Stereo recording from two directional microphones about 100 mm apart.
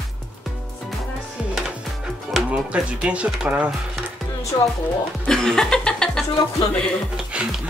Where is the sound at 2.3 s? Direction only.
10° right (ahead or behind).